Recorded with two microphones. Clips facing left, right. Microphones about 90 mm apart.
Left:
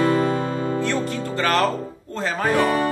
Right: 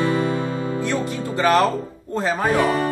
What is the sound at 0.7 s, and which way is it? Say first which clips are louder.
Music: even; 15° right (ahead or behind).